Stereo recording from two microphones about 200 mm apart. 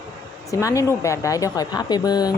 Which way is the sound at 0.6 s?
15° left (ahead or behind).